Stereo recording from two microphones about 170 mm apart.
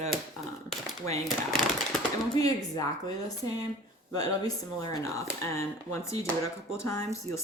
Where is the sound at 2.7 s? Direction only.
20° left (ahead or behind).